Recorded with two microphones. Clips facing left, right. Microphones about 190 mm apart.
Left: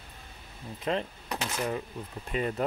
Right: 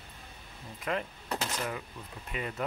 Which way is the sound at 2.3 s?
35° left (ahead or behind).